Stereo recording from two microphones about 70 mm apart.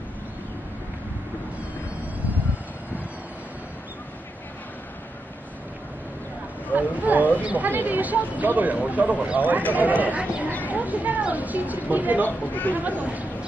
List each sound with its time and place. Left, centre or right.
6.7 s speech: right
12.2 s speech: left
12.7 s speech: right